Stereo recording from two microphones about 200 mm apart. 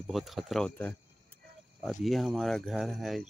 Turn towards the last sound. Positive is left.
turn(degrees=0)  # may be behind; listen again after turning